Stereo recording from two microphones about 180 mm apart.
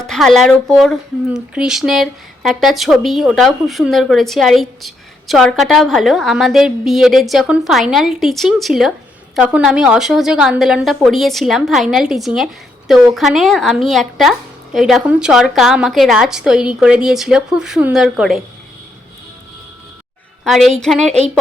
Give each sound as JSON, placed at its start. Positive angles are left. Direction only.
{"t": 0.0, "sound": "speech", "side_deg": 0}
{"t": 20.4, "sound": "a woman's voice", "side_deg": 0}